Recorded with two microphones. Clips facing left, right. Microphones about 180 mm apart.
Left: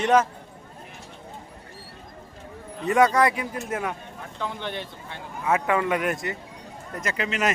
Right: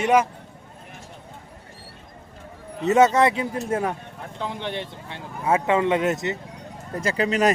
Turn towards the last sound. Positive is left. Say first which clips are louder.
# right 6 dB
turn(degrees=-35)  # may be behind; listen again after turning